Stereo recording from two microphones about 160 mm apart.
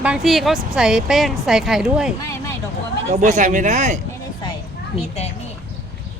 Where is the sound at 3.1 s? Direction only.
50° right (ahead or behind).